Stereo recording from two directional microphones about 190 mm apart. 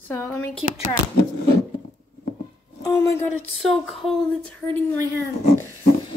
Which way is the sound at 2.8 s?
15° left (ahead or behind).